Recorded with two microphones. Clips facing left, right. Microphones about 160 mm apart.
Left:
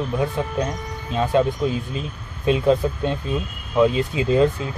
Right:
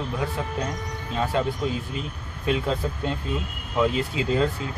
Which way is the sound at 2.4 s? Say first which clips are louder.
Left 7 dB; 20° left (ahead or behind).